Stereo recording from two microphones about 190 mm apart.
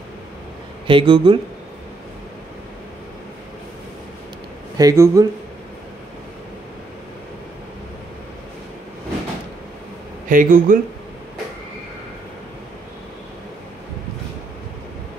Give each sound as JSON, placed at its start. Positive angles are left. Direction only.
{"t": 0.8, "sound": "speech", "side_deg": -25}
{"t": 4.7, "sound": "speech", "side_deg": -15}
{"t": 10.3, "sound": "speech", "side_deg": -45}